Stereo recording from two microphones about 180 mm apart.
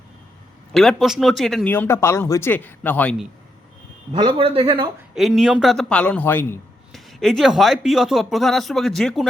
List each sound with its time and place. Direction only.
0.7 s a man's voice: centre (ahead or behind)
4.1 s speech: 25° right (ahead or behind)
5.1 s speech: centre (ahead or behind)
6.9 s speech: centre (ahead or behind)